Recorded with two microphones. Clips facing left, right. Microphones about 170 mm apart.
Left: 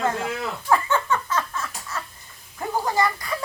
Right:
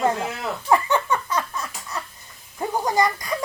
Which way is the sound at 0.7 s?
15° right (ahead or behind).